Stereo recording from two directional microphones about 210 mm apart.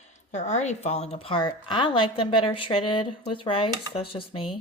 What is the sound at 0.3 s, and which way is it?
A woman's voice, 35° left (ahead or behind).